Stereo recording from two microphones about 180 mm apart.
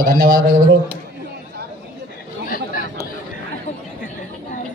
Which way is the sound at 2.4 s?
55° left (ahead or behind).